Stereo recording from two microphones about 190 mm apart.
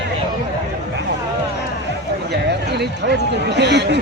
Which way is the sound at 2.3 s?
60° right (ahead or behind).